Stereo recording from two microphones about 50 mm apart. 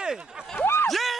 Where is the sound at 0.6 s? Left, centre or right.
Left.